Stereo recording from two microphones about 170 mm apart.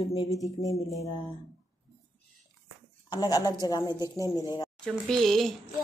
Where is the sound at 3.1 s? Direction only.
25° left (ahead or behind).